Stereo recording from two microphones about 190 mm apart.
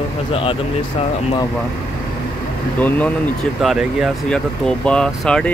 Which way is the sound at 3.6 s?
Centre (ahead or behind).